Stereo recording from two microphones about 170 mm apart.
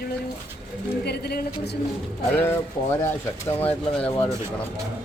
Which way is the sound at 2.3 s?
15° left (ahead or behind).